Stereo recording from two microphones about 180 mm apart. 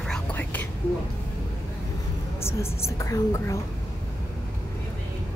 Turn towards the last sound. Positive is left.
turn(degrees=15)  # may be behind; listen again after turning